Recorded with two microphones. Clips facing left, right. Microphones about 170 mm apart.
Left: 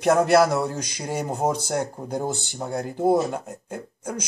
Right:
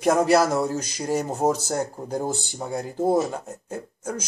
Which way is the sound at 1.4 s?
5° right (ahead or behind).